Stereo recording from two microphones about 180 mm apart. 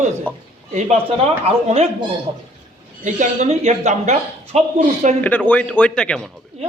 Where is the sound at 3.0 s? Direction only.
40° right (ahead or behind).